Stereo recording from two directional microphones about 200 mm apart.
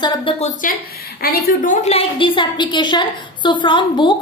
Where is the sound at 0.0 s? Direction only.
30° left (ahead or behind).